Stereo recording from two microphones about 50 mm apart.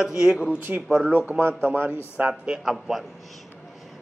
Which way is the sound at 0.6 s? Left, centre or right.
Right.